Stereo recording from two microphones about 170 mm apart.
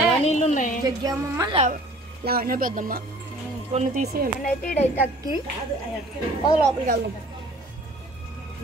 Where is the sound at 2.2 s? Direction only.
60° right (ahead or behind).